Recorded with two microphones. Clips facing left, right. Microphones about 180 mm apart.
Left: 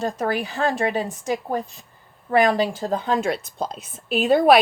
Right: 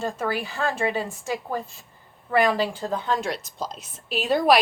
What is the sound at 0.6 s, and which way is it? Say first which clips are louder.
Speech: left 4 dB; 45° left (ahead or behind).